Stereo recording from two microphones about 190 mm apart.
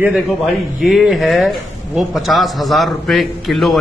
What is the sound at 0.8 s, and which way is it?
A man's voice, centre (ahead or behind).